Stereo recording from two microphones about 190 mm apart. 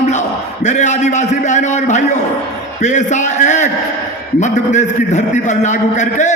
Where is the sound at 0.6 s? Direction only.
40° left (ahead or behind).